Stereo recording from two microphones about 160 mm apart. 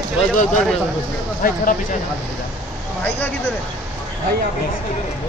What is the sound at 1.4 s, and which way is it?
Speech, 60° left (ahead or behind).